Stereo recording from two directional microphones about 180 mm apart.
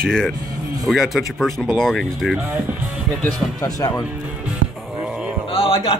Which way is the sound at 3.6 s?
20° left (ahead or behind).